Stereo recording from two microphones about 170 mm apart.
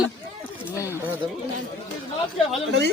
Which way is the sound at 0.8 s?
15° left (ahead or behind).